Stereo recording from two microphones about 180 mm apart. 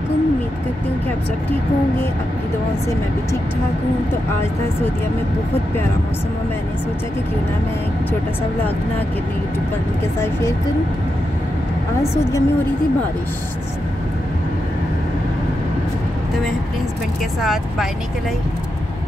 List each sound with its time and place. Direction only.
12.0 s speech: 15° left (ahead or behind)
17.4 s speech: centre (ahead or behind)